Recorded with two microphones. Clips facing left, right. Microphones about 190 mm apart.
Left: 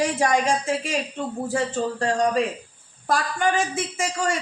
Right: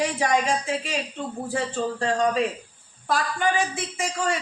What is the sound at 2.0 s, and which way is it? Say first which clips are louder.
Speech: left 1 dB; 45° left (ahead or behind).